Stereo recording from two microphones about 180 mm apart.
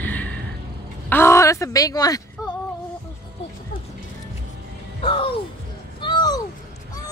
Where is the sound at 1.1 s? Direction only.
15° left (ahead or behind).